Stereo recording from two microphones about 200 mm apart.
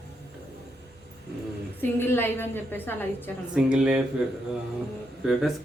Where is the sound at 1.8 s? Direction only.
10° left (ahead or behind).